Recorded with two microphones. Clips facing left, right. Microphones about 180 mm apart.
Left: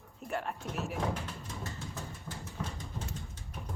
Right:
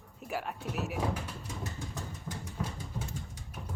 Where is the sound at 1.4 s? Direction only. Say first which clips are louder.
Right 1 dB; 15° right (ahead or behind).